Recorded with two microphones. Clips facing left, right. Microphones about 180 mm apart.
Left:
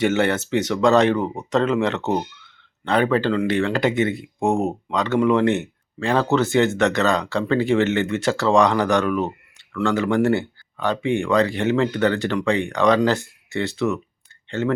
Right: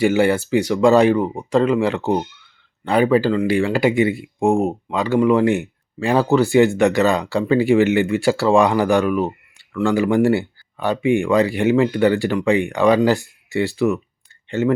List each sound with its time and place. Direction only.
0.0 s speech: 5° right (ahead or behind)
4.4 s speech: centre (ahead or behind)
4.6 s speech: 10° right (ahead or behind)
14.6 s speech: 70° right (ahead or behind)